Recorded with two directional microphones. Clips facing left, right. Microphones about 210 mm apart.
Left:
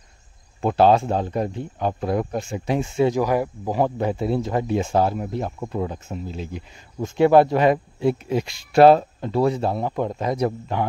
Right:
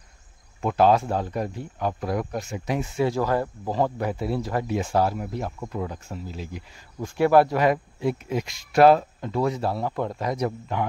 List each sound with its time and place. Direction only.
0.6 s speech: 30° left (ahead or behind)
3.2 s speech: 15° left (ahead or behind); by 10.9 s 30° left (ahead or behind)